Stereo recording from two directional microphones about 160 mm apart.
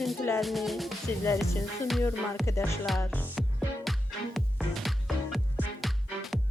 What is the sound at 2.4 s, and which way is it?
Speech, 15° left (ahead or behind).